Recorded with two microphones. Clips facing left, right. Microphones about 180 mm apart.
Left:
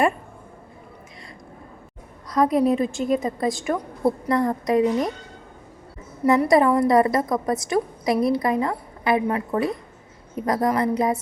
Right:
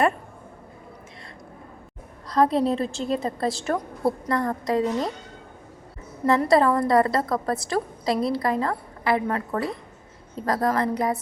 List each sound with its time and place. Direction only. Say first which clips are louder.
2.3 s a woman's voice: left 2 dB; 30° right (ahead or behind)
2.7 s a woman's voice: left 4 dB; 10° left (ahead or behind)
6.4 s a woman's voice: left 1 dB; 15° left (ahead or behind)